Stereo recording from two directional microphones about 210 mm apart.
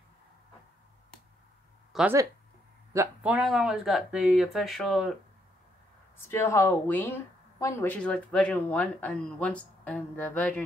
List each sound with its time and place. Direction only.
1.9 s a sound: 5° right (ahead or behind)
2.9 s speech: 10° right (ahead or behind)
6.1 s speech: 10° left (ahead or behind)